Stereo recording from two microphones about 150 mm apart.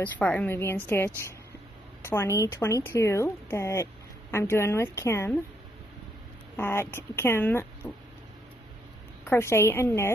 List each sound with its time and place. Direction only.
0.0 s speech: 10° left (ahead or behind)
6.5 s speech: 15° left (ahead or behind)
9.2 s speech: 15° left (ahead or behind)